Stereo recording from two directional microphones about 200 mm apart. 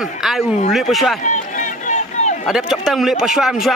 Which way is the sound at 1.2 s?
40° left (ahead or behind).